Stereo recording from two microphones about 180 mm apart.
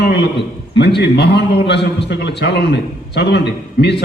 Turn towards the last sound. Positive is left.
turn(degrees=70)  # may be behind; listen again after turning